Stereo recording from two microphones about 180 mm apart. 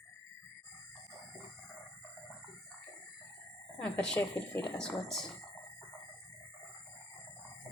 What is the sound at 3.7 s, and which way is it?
Speech, 5° left (ahead or behind).